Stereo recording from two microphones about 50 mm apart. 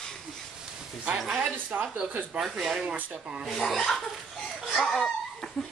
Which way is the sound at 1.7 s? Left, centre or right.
Right.